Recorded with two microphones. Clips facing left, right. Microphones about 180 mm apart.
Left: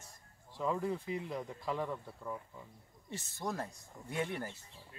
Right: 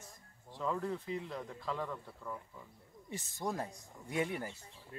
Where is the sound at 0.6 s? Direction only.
10° left (ahead or behind).